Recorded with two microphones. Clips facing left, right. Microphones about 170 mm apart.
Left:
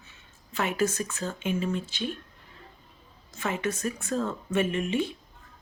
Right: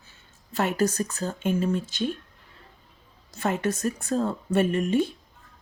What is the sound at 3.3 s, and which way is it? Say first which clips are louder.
Speech: right 4 dB; 40° right (ahead or behind).